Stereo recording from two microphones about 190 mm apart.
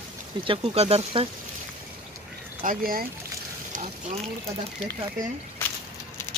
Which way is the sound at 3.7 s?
35° right (ahead or behind).